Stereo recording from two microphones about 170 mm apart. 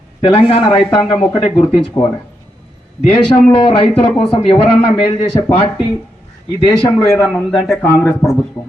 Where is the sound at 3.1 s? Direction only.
35° left (ahead or behind).